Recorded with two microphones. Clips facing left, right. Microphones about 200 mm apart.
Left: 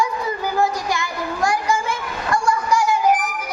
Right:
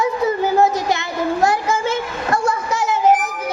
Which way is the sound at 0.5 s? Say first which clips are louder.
Right 5 dB; 25° right (ahead or behind).